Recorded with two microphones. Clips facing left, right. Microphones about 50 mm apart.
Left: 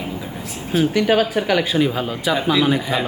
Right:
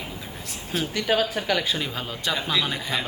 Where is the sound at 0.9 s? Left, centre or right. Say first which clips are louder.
Left 4 dB; centre.